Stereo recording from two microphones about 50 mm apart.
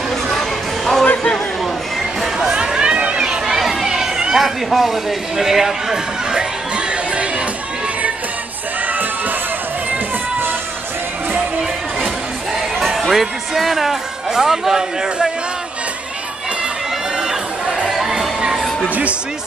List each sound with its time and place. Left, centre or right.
0.3 s a sound: centre
2.3 s a sound: centre
3.2 s chatter: centre
12.7 s speech: centre
17.6 s music: centre
18.4 s music: centre